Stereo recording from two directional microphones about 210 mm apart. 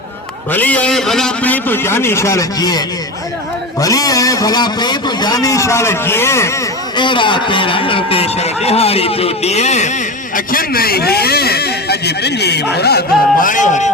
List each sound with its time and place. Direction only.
0.5 s a man's voice: 5° left (ahead or behind)
6.9 s a man's voice: 20° left (ahead or behind)
10.3 s speech: 45° left (ahead or behind)